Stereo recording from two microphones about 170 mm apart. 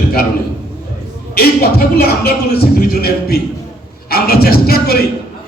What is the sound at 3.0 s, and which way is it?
A man's voice, 65° left (ahead or behind).